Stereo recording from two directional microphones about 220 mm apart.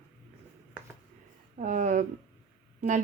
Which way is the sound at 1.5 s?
35° right (ahead or behind).